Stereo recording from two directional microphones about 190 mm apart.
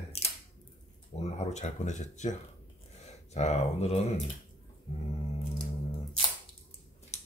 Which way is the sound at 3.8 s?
35° left (ahead or behind).